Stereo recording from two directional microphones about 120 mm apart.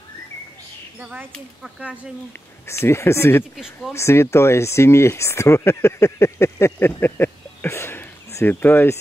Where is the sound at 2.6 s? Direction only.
20° left (ahead or behind).